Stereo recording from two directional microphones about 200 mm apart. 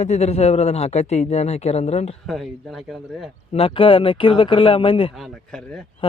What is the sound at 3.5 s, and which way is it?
Speech, 30° left (ahead or behind).